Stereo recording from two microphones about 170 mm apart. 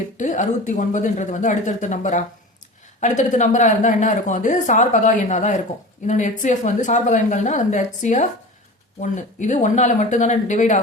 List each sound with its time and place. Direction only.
0.2 s a woman's voice: 45° left (ahead or behind)